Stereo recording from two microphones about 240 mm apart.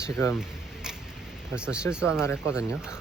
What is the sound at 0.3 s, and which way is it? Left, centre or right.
Camera, centre.